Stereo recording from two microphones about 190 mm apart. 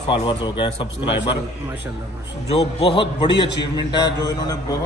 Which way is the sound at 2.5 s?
30° left (ahead or behind).